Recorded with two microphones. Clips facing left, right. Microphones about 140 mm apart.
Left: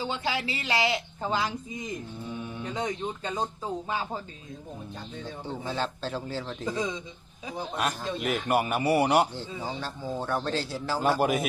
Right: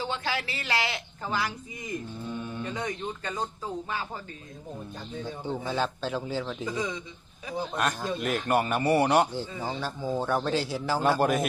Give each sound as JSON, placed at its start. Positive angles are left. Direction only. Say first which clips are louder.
{"t": 0.0, "sound": "speech", "louder": "left 1 dB", "side_deg": 15}
{"t": 2.2, "sound": "mantra", "louder": "right 1 dB", "side_deg": 5}
{"t": 2.7, "sound": "speech", "louder": "left 2 dB", "side_deg": 20}
{"t": 5.2, "sound": "a man's voice", "louder": "right 3 dB", "side_deg": 0}
{"t": 6.7, "sound": "speech", "louder": "left 4 dB", "side_deg": 25}
{"t": 7.8, "sound": "speech", "louder": "even", "side_deg": 5}
{"t": 9.8, "sound": "a man's voice", "louder": "right 3 dB", "side_deg": 0}